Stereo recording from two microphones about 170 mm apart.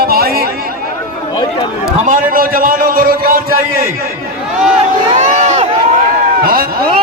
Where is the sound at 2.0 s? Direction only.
55° right (ahead or behind).